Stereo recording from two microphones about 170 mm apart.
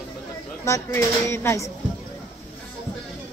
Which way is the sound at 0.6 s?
15° left (ahead or behind).